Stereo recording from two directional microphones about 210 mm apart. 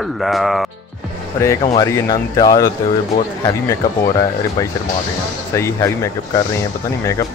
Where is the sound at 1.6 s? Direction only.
30° left (ahead or behind); by 7.3 s 15° left (ahead or behind).